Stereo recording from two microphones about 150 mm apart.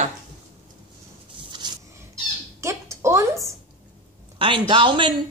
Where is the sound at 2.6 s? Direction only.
20° right (ahead or behind).